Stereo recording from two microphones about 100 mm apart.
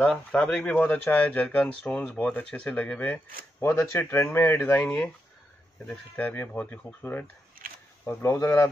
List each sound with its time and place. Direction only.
0.0 s speech: 10° left (ahead or behind)
3.6 s speech: 30° left (ahead or behind)